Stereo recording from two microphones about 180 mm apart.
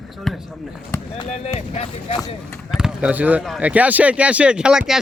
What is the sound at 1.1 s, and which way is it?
Basketball bounce, 35° left (ahead or behind).